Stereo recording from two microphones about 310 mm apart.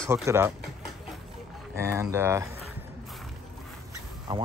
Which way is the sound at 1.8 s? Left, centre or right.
Centre.